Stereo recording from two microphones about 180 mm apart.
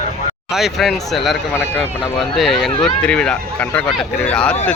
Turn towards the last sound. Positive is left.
turn(degrees=5)  # may be behind; listen again after turning